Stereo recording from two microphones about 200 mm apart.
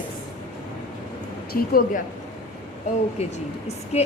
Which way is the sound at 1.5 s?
45° left (ahead or behind).